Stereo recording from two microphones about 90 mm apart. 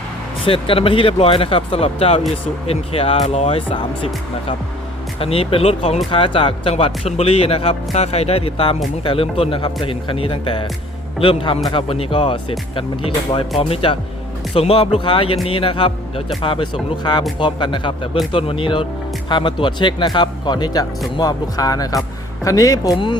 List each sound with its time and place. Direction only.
0.4 s speech: 90° left
6.1 s speech: 75° left (ahead or behind)
18.3 s speech: 80° left; by 23.0 s 40° left (ahead or behind)